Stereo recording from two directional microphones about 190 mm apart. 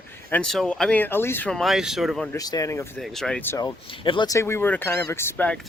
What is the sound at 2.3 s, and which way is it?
Speech, 15° left (ahead or behind).